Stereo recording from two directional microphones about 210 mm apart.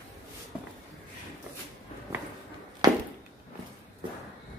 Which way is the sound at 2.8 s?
20° right (ahead or behind).